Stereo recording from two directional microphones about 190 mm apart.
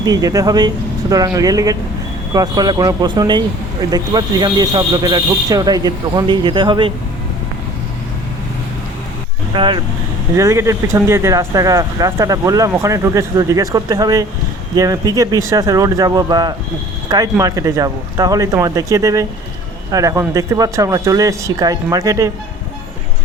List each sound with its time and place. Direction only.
0.0 s speech: 20° right (ahead or behind)
9.5 s speech: 25° right (ahead or behind)